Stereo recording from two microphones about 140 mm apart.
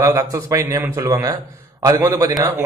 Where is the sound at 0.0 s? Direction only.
20° right (ahead or behind).